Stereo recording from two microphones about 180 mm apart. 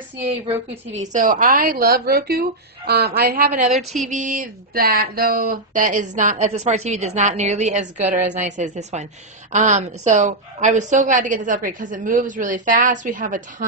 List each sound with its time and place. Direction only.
0.5 s a woman's voice: 40° right (ahead or behind); by 3.6 s 55° right (ahead or behind)
3.7 s music: centre (ahead or behind)
4.1 s a woman's voice: 45° right (ahead or behind)